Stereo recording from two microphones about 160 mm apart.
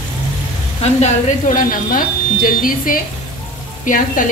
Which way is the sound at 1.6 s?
60° left (ahead or behind).